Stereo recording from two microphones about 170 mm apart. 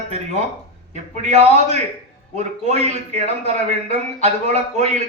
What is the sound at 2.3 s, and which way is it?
A man's voice, 40° right (ahead or behind).